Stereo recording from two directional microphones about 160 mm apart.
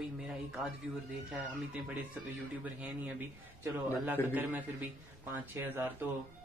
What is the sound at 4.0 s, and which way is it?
Speech, 10° right (ahead or behind).